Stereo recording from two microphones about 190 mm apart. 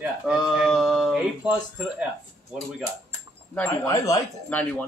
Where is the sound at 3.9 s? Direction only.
20° left (ahead or behind).